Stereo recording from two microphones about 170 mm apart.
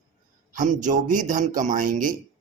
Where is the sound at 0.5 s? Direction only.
50° right (ahead or behind).